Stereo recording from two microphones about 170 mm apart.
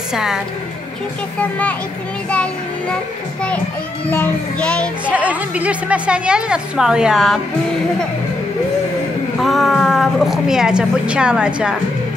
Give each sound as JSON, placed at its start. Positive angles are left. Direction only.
{"t": 0.1, "sound": "a woman's voice", "side_deg": -5}
{"t": 1.4, "sound": "a child's voice", "side_deg": 10}
{"t": 4.1, "sound": "a child's voice", "side_deg": 10}
{"t": 5.1, "sound": "a woman's voice", "side_deg": -10}
{"t": 9.4, "sound": "a woman's voice", "side_deg": 0}